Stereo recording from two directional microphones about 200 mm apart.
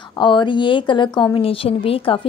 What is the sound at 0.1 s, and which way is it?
A woman's voice, 20° left (ahead or behind).